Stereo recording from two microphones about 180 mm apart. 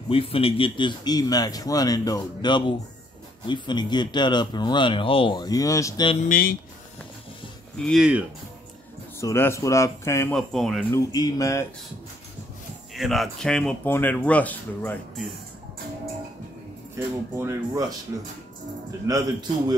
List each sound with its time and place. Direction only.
0.1 s speech: 30° left (ahead or behind)
6.2 s speech: 50° left (ahead or behind)
7.8 s speech: centre (ahead or behind)
9.2 s speech: 15° left (ahead or behind)
10.3 s speech: centre (ahead or behind)
10.9 s speech: 20° left (ahead or behind)
12.9 s speech: centre (ahead or behind)
16.9 s speech: 15° right (ahead or behind)